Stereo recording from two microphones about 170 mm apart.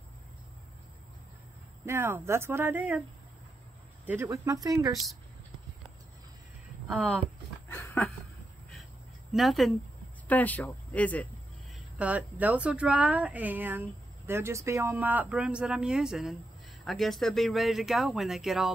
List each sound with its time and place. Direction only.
1.9 s speech: 15° right (ahead or behind)
4.0 s speech: 10° right (ahead or behind)
6.9 s a sound: 5° left (ahead or behind)
9.3 s speech: centre (ahead or behind)
12.0 s speech: 10° right (ahead or behind)